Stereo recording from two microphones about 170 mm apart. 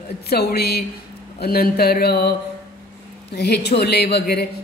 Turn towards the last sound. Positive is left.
turn(degrees=70)  # may be behind; listen again after turning